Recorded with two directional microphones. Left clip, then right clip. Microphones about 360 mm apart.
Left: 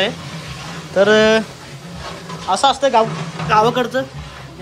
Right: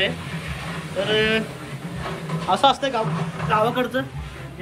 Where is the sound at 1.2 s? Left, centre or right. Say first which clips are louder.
Left 8 dB; centre.